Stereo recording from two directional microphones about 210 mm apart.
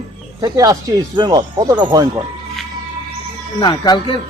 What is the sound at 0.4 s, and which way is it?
Speech, 15° right (ahead or behind).